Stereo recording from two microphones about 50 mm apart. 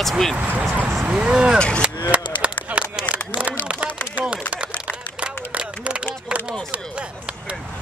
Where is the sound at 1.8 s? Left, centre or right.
Right.